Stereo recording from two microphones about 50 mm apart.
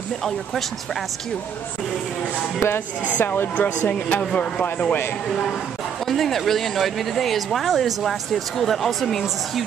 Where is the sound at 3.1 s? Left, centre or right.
Left.